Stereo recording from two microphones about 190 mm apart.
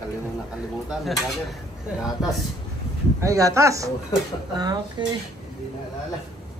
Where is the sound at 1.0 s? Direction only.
Centre (ahead or behind).